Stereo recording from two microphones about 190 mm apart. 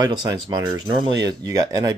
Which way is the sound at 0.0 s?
20° right (ahead or behind).